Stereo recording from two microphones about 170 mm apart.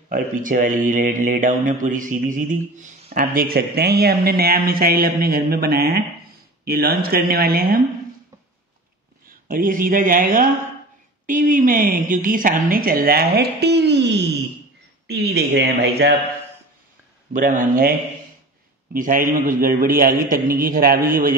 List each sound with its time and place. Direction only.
0.1 s a woman's voice: 55° right (ahead or behind)
9.5 s a woman's voice: 55° right (ahead or behind); by 14.3 s 90° right
15.0 s speech: 75° right (ahead or behind)
17.3 s speech: 50° right (ahead or behind)
18.9 s a woman's voice: 50° right (ahead or behind)